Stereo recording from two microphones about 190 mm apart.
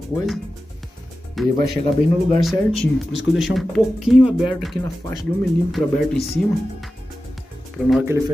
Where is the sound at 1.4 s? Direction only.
Centre (ahead or behind).